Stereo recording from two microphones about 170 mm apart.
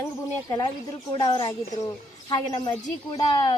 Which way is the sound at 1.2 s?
25° left (ahead or behind).